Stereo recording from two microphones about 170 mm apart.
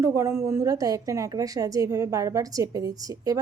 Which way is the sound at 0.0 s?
15° right (ahead or behind).